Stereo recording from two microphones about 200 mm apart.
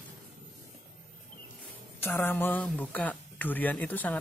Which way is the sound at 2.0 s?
10° left (ahead or behind).